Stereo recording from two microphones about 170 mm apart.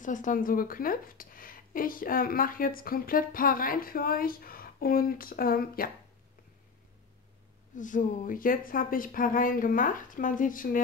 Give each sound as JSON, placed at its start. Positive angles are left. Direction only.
{"t": 0.0, "sound": "speech", "side_deg": 50}
{"t": 7.7, "sound": "speech", "side_deg": 50}